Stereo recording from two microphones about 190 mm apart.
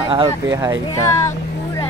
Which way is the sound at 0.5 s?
20° right (ahead or behind).